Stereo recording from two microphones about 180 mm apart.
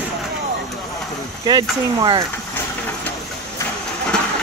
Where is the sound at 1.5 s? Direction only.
25° right (ahead or behind).